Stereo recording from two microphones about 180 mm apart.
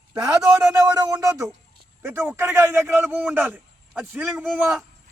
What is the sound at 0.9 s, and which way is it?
A man's voice, 20° right (ahead or behind).